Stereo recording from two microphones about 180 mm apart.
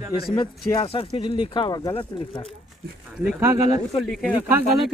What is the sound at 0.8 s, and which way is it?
Speech, 30° left (ahead or behind).